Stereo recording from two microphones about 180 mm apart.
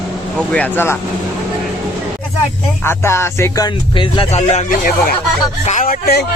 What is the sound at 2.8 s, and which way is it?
Speech, 15° left (ahead or behind).